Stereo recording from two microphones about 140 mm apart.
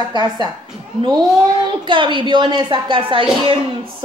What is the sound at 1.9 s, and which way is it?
A woman's voice, 35° right (ahead or behind).